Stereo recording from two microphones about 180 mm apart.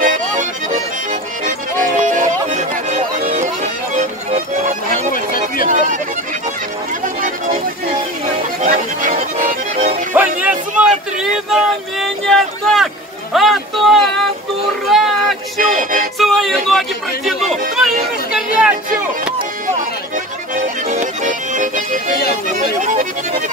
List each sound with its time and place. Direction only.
0.0 s music: 45° right (ahead or behind)
5.1 s a sound: 50° left (ahead or behind)
5.7 s music: 45° right (ahead or behind)
8.6 s music: 45° right (ahead or behind)
10.1 s a sound: 10° right (ahead or behind)
15.6 s music: 50° right (ahead or behind)
16.2 s music: centre (ahead or behind)
20.9 s music: 45° right (ahead or behind)